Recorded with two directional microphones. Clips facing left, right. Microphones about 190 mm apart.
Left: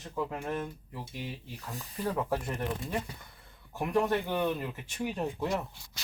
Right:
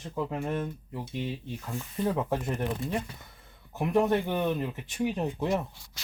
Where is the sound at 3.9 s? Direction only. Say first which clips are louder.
Right 4 dB; 20° right (ahead or behind).